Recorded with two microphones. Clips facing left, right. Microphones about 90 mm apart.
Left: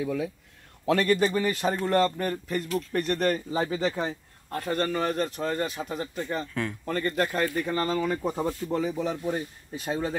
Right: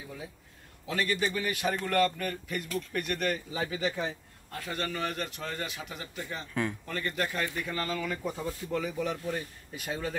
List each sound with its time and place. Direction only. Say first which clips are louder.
0.0 s speech: left 14 dB; 90° left
0.8 s a man's voice: left 8 dB; 50° left (ahead or behind)
1.3 s speech: left 5 dB; 35° left (ahead or behind)
6.5 s speech: right 3 dB; 15° right (ahead or behind)
6.9 s speech: left 6 dB; 40° left (ahead or behind)